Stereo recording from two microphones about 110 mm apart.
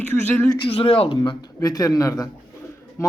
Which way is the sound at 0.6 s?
55° left (ahead or behind).